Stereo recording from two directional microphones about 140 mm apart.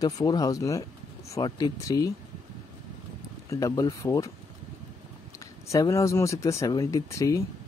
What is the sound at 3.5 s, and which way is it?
Speech, 25° left (ahead or behind).